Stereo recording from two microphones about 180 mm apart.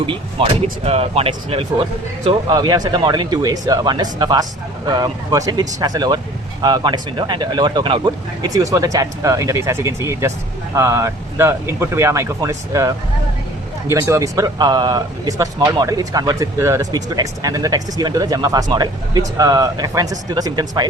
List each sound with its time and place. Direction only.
0.0 s speech: 30° right (ahead or behind)